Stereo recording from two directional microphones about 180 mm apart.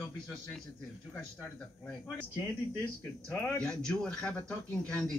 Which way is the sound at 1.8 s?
10° left (ahead or behind).